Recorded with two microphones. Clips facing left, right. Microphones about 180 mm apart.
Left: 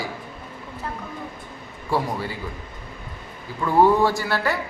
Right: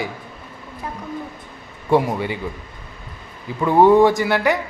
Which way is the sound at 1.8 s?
20° right (ahead or behind).